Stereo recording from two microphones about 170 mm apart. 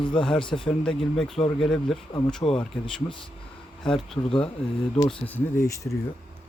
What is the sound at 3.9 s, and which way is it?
Speech, centre (ahead or behind).